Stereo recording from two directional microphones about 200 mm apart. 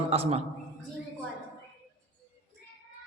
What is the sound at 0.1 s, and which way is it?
Speech, 30° right (ahead or behind).